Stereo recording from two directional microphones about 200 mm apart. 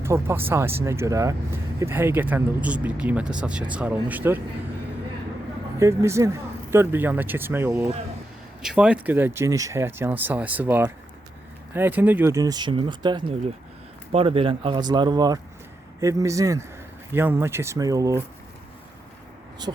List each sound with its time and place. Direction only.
0.0 s speech: 15° right (ahead or behind)
5.8 s speech: 15° right (ahead or behind)
19.7 s speech: 25° right (ahead or behind)